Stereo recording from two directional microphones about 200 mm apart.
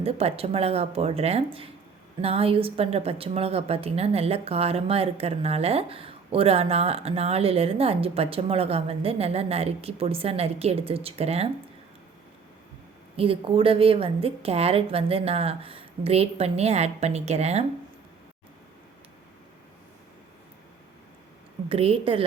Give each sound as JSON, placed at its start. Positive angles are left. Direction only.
{"t": 0.0, "sound": "a woman's voice", "side_deg": -30}
{"t": 13.1, "sound": "a woman's voice", "side_deg": -30}
{"t": 21.7, "sound": "a woman's voice", "side_deg": -30}